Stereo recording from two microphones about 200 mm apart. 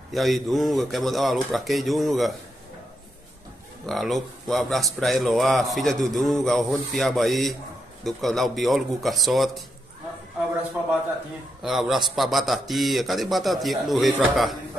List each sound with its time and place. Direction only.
0.1 s a man's voice: centre (ahead or behind)
3.8 s a man's voice: centre (ahead or behind)
11.6 s a man's voice: centre (ahead or behind)